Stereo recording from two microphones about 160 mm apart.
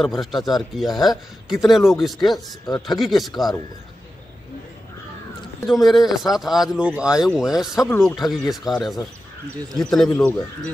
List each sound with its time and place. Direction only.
0.2 s speech: centre (ahead or behind)
2.6 s speech: 25° left (ahead or behind)
3.0 s speech: centre (ahead or behind)
5.7 s speech: centre (ahead or behind)